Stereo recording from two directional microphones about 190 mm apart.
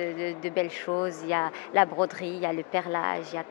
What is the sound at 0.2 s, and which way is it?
Speech, 10° left (ahead or behind).